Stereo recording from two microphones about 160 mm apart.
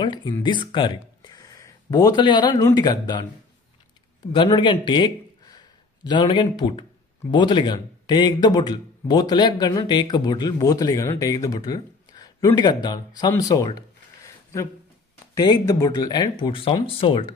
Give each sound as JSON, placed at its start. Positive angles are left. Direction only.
{"t": 0.0, "sound": "speech", "side_deg": 30}
{"t": 4.3, "sound": "speech", "side_deg": 30}
{"t": 13.3, "sound": "a sound", "side_deg": 20}
{"t": 15.3, "sound": "speech", "side_deg": 25}